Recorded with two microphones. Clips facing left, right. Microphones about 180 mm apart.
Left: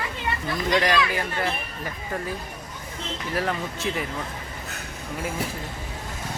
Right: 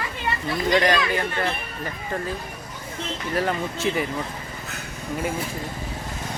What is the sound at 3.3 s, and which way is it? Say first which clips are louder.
Speech: right 3 dB; centre (ahead or behind).